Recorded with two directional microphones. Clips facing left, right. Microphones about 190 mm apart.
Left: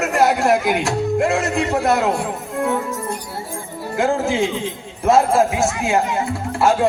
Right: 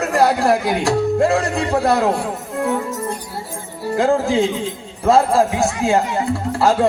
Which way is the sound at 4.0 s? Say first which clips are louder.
Right 2 dB; 35° right (ahead or behind).